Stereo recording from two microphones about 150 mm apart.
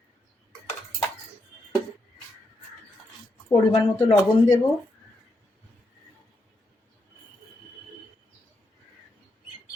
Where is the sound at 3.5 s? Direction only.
25° left (ahead or behind).